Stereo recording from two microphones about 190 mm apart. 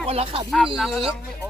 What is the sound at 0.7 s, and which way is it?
Speech, centre (ahead or behind).